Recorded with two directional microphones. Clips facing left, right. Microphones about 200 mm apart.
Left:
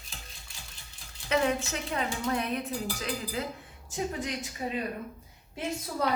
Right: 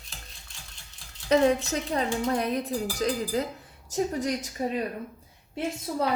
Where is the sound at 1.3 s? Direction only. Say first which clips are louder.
Right 6 dB; 35° right (ahead or behind).